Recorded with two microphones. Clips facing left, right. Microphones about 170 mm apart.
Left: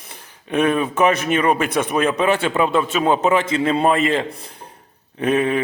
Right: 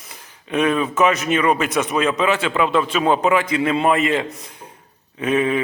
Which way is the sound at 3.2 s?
25° left (ahead or behind).